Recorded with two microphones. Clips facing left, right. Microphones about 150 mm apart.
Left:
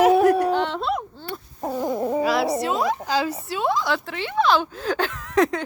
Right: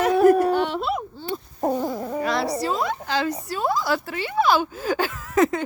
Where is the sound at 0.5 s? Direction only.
10° right (ahead or behind).